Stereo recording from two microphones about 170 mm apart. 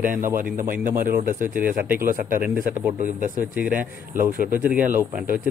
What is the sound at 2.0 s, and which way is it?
Speech, 55° right (ahead or behind).